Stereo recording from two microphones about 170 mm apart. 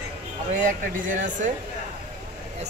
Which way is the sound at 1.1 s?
50° right (ahead or behind).